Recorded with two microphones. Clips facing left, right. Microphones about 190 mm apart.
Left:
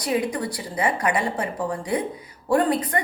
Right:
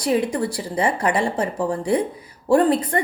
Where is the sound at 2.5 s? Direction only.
30° right (ahead or behind).